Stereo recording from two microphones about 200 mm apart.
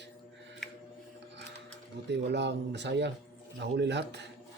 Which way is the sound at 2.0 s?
60° right (ahead or behind).